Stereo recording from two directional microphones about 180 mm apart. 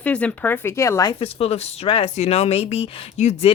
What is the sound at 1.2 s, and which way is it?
Speech, 35° left (ahead or behind).